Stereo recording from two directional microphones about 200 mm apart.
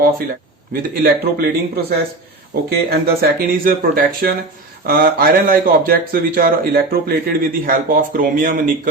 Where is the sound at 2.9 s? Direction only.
45° right (ahead or behind).